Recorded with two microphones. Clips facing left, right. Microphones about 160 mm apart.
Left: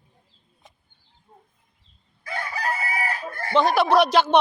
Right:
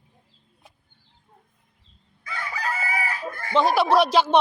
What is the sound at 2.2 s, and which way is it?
Chicken, 35° left (ahead or behind).